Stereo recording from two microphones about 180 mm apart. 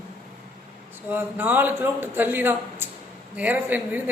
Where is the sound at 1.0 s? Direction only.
10° right (ahead or behind).